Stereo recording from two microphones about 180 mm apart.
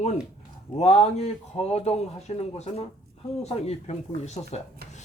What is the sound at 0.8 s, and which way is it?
Speech, 35° left (ahead or behind).